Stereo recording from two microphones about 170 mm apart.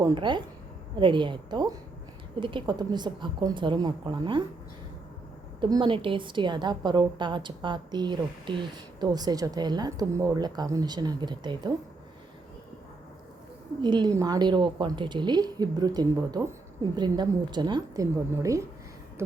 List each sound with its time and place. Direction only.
0.0 s a woman's voice: 30° right (ahead or behind)
5.5 s a woman's voice: 25° right (ahead or behind)
13.8 s a woman's voice: 25° right (ahead or behind)